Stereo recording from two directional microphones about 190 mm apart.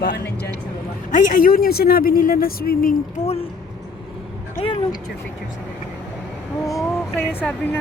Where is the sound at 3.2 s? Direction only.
30° left (ahead or behind).